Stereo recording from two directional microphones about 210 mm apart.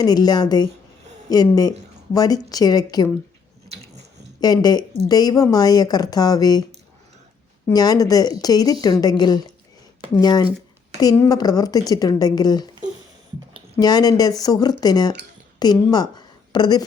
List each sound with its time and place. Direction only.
0.0 s a woman's voice: 20° left (ahead or behind)
4.4 s speech: 20° left (ahead or behind)
7.7 s a woman's voice: 20° left (ahead or behind)
13.8 s a woman's voice: 20° left (ahead or behind)